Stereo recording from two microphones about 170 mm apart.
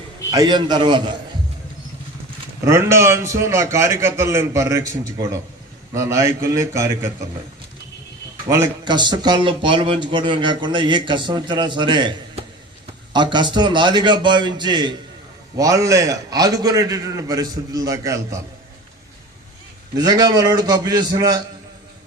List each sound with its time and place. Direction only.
0.3 s speech: 25° right (ahead or behind)
2.6 s a man's voice: 15° right (ahead or behind)
8.4 s speech: 15° right (ahead or behind)
13.1 s speech: 25° right (ahead or behind)
20.0 s speech: 25° right (ahead or behind)